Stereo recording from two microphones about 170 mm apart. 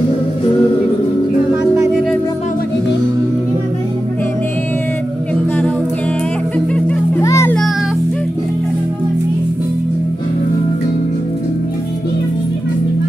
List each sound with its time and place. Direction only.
1.5 s music: 15° right (ahead or behind)
6.7 s music: 10° left (ahead or behind)
7.2 s children playing: 15° left (ahead or behind)